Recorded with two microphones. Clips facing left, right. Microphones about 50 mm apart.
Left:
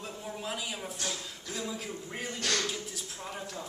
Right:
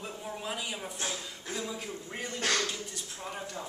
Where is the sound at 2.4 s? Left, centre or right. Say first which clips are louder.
Right 2 dB; right.